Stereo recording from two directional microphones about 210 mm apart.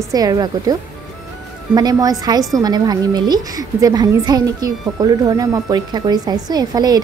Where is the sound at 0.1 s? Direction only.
15° right (ahead or behind).